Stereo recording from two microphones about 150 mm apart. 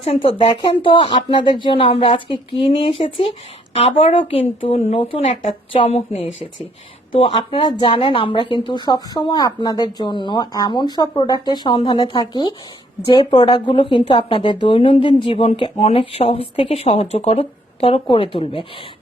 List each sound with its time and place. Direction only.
0.0 s a woman's voice: 40° left (ahead or behind)